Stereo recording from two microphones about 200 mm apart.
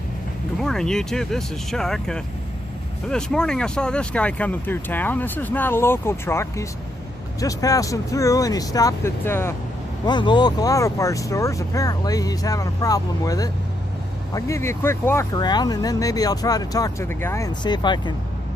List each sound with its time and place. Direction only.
0.6 s speech: centre (ahead or behind)
10.0 s speech: 20° left (ahead or behind)